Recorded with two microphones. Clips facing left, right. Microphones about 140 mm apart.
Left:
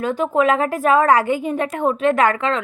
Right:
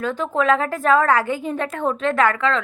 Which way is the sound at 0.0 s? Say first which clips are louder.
Left 3 dB; 15° left (ahead or behind).